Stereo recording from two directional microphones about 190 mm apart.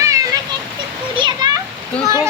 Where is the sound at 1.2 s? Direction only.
20° right (ahead or behind).